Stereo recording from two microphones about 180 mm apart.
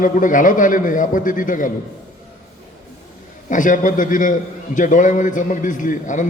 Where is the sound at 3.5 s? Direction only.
45° left (ahead or behind).